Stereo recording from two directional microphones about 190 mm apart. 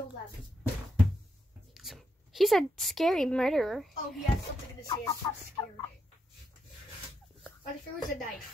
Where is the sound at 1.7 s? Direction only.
Centre (ahead or behind).